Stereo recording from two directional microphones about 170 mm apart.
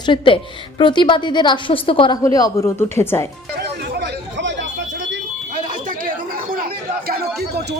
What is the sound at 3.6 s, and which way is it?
Chatter, 80° right.